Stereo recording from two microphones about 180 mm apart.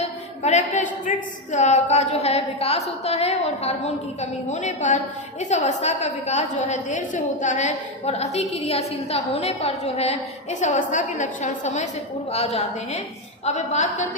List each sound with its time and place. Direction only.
0.4 s a woman's voice: 40° left (ahead or behind)